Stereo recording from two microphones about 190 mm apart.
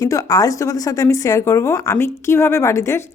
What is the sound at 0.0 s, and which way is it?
Speech, 20° left (ahead or behind).